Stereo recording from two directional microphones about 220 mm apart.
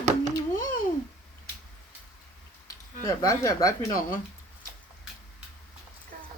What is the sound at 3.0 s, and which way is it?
Speech, 15° left (ahead or behind).